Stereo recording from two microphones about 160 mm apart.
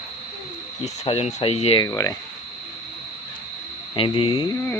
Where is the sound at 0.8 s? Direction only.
40° left (ahead or behind).